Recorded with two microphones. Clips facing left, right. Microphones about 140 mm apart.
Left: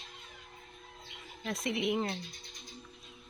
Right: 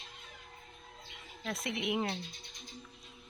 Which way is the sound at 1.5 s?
Centre (ahead or behind).